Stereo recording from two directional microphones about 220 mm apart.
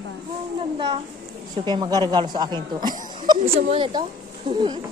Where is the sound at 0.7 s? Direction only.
25° right (ahead or behind).